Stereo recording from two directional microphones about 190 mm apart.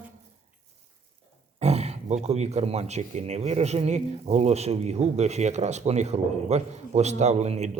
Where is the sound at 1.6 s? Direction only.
35° right (ahead or behind).